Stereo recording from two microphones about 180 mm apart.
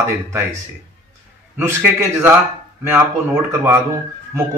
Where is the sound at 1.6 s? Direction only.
15° right (ahead or behind).